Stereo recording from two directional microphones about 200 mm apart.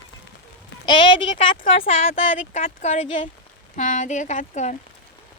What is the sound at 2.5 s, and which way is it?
Speech, 40° left (ahead or behind).